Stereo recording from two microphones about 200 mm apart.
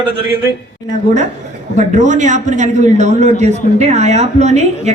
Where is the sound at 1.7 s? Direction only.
40° right (ahead or behind).